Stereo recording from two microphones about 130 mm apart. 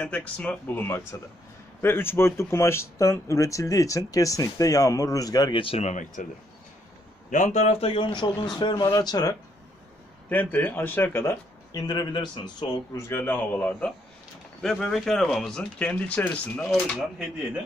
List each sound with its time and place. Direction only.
0.0 s speech: 10° left (ahead or behind); by 6.2 s 70° left (ahead or behind)
7.2 s speech: 75° left (ahead or behind)
7.9 s speech: 40° left (ahead or behind)
10.3 s speech: 15° left (ahead or behind)
11.7 s speech: 30° left (ahead or behind)
12.9 s speech: 15° left (ahead or behind)